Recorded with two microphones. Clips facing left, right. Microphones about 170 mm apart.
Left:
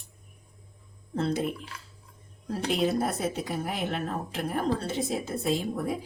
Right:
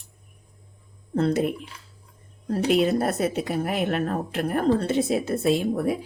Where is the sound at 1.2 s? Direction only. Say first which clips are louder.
Right 6 dB; 65° right (ahead or behind).